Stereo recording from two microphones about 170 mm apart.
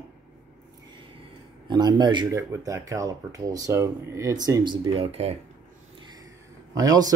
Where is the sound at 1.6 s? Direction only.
25° right (ahead or behind).